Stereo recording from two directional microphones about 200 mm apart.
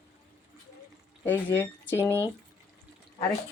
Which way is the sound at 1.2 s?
10° left (ahead or behind).